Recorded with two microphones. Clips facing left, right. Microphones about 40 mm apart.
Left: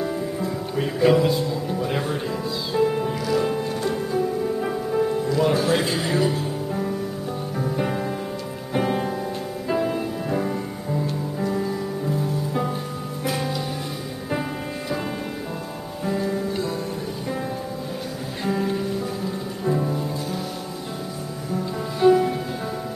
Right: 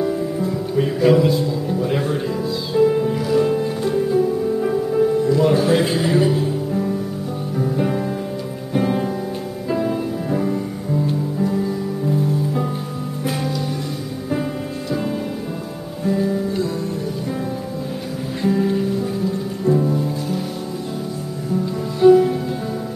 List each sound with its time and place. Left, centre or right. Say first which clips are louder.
0.0 s speech: right 5 dB; centre
3.2 s music: right 5 dB; centre
5.6 s speech: right 5 dB; centre
6.1 s music: right 5 dB; centre
7.5 s music: right 5 dB; centre
16.1 s music: right 5 dB; centre
18.4 s music: right 5 dB; centre
22.0 s music: right 5 dB; centre